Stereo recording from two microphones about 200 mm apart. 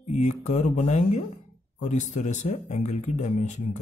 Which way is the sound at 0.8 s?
35° left (ahead or behind).